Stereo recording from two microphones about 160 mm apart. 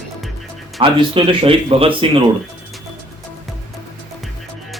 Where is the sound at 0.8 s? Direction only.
30° right (ahead or behind).